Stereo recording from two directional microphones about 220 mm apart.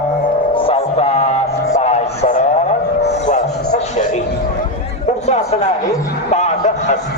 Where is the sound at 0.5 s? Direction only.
25° left (ahead or behind).